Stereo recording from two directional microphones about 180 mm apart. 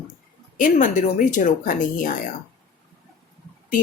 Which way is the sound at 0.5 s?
45° left (ahead or behind).